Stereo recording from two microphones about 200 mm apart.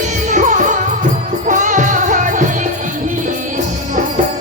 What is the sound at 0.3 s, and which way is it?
Music, 40° right (ahead or behind).